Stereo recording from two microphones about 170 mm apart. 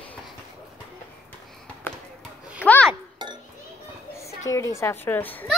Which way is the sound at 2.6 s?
10° left (ahead or behind).